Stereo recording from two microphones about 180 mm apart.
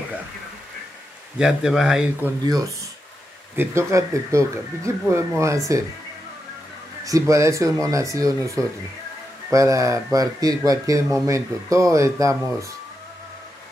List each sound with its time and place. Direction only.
1.4 s speech: centre (ahead or behind)
2.4 s speech: 20° right (ahead or behind)
7.1 s speech: 20° right (ahead or behind)